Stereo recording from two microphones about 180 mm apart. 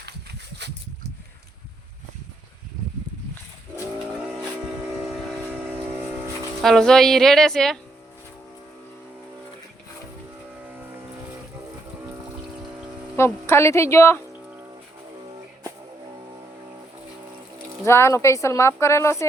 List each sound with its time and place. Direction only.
0.6 s a sound: 70° right (ahead or behind)
6.6 s speech: centre (ahead or behind)
13.1 s speech: 15° left (ahead or behind)
17.8 s speech: 15° left (ahead or behind)